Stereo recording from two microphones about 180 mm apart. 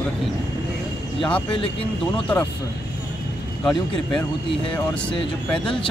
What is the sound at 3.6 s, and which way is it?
Speech, 5° left (ahead or behind).